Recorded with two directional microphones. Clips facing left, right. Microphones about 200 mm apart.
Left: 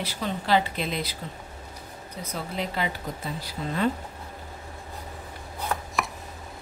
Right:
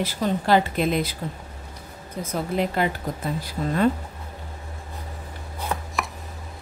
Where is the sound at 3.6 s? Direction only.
40° right (ahead or behind).